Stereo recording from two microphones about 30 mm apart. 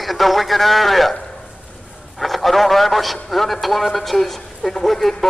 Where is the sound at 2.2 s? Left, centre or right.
Centre.